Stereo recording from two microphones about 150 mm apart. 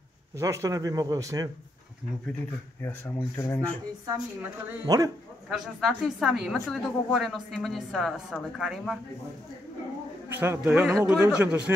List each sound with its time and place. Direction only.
0.4 s speech: 20° right (ahead or behind)
2.8 s speech: 15° left (ahead or behind)
4.8 s speech: 25° right (ahead or behind)
5.5 s a woman's voice: centre (ahead or behind)
10.3 s a man's voice: 15° right (ahead or behind)